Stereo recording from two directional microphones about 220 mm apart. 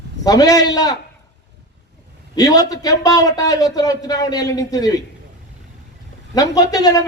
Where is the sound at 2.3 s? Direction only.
15° left (ahead or behind).